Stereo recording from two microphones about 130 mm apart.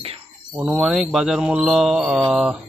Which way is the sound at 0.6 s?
5° right (ahead or behind).